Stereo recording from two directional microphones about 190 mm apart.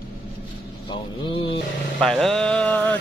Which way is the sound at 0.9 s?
25° left (ahead or behind).